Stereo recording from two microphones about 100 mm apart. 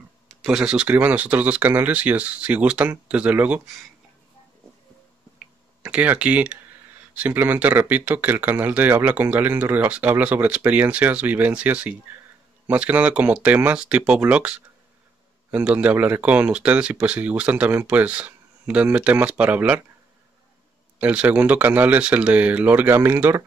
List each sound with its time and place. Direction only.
0.4 s speech: 5° right (ahead or behind)
5.8 s speech: 10° right (ahead or behind)
15.5 s speech: 15° right (ahead or behind)
21.0 s speech: 15° right (ahead or behind)